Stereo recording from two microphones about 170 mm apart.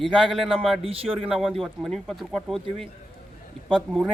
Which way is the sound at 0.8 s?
35° right (ahead or behind).